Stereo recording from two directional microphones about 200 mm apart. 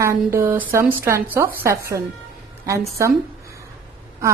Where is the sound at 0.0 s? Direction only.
10° right (ahead or behind).